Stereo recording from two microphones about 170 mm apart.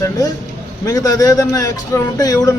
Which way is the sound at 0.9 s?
20° left (ahead or behind).